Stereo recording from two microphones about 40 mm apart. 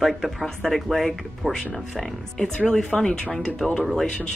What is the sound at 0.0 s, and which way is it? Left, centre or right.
Speech, centre.